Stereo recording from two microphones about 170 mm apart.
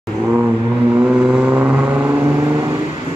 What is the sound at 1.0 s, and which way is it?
Vehicle, 5° right (ahead or behind).